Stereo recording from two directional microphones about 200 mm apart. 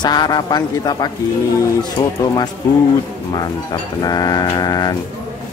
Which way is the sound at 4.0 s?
20° left (ahead or behind).